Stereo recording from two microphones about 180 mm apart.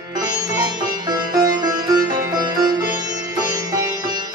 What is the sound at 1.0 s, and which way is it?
Music, 20° right (ahead or behind).